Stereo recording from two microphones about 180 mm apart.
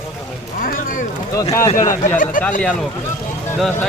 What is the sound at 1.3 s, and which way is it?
Speech, 15° left (ahead or behind).